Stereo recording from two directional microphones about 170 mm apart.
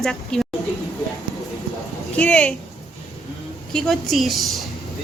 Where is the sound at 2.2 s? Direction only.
5° left (ahead or behind).